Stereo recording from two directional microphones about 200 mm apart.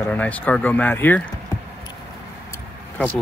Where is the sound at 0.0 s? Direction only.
5° left (ahead or behind).